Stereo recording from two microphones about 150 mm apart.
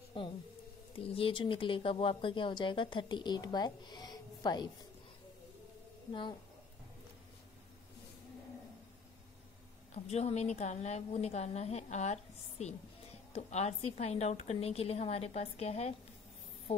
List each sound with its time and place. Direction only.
0.2 s speech: 35° left (ahead or behind)
9.9 s a woman's voice: 45° left (ahead or behind)